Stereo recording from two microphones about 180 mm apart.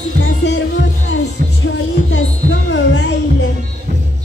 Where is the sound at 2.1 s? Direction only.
90° left.